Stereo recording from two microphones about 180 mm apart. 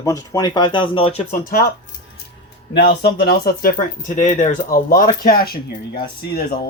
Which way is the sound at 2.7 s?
65° left (ahead or behind).